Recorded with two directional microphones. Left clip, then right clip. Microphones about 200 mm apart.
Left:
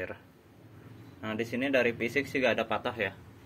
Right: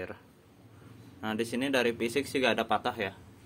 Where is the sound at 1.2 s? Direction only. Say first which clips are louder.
Even; 15° right (ahead or behind).